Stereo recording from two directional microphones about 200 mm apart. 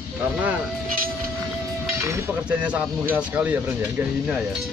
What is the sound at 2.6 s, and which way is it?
Speech, 5° right (ahead or behind).